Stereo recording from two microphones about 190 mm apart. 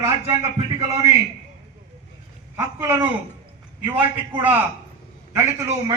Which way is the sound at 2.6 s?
10° right (ahead or behind).